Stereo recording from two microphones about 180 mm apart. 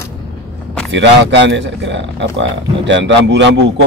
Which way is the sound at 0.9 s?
80° right.